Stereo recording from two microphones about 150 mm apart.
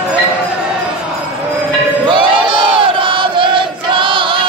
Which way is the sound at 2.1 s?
30° right (ahead or behind).